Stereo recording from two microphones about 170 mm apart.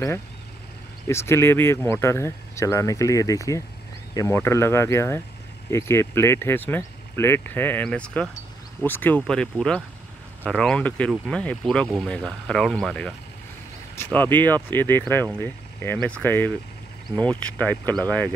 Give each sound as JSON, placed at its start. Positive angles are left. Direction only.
{"t": 1.0, "sound": "speech", "side_deg": 15}